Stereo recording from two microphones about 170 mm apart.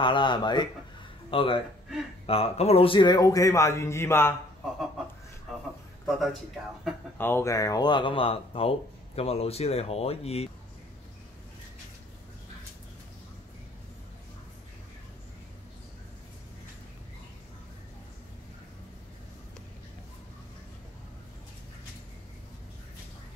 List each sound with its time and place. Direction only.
0.0 s a man's voice: 30° left (ahead or behind)
6.0 s speech: centre (ahead or behind)
7.2 s speech: 15° left (ahead or behind); by 10.5 s 35° left (ahead or behind)